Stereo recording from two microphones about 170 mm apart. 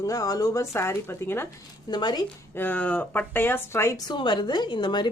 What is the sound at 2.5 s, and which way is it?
Speech, 10° left (ahead or behind).